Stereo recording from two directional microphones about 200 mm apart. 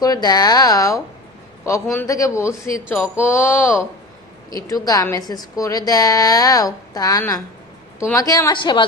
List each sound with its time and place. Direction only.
0.0 s a woman's voice: 20° left (ahead or behind)